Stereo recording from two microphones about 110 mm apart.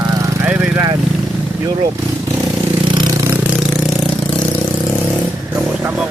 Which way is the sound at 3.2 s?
20° right (ahead or behind).